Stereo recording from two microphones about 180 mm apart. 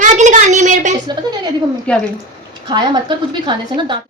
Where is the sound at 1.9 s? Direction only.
5° left (ahead or behind).